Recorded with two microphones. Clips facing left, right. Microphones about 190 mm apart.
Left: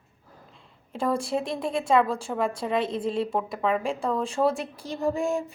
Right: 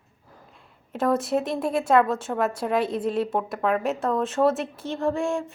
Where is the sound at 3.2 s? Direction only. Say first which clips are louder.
Right 1 dB; 5° right (ahead or behind).